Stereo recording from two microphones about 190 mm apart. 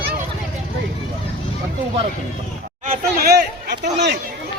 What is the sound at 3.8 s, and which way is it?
Speech, 65° right (ahead or behind).